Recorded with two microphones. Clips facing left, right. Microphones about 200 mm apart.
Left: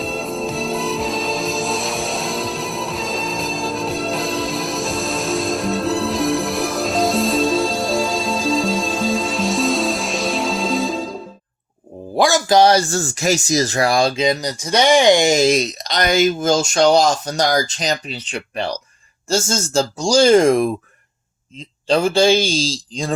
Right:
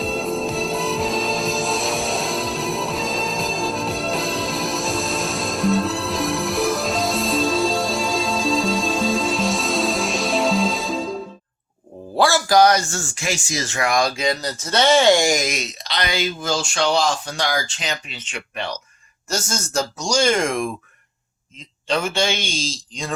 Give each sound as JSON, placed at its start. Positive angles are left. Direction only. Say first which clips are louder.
{"t": 0.0, "sound": "music", "louder": "right 1 dB", "side_deg": 0}
{"t": 12.1, "sound": "speech", "louder": "left 2 dB", "side_deg": 15}
{"t": 21.8, "sound": "speech", "louder": "left 7 dB", "side_deg": 35}